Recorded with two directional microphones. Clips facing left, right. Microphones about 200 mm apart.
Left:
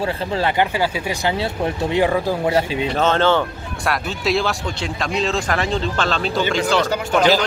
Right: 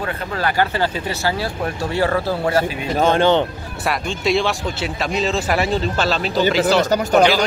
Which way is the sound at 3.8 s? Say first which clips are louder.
Right 1 dB; centre (ahead or behind).